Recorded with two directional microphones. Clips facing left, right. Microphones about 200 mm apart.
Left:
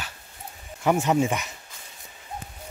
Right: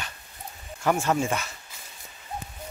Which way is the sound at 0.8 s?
20° left (ahead or behind).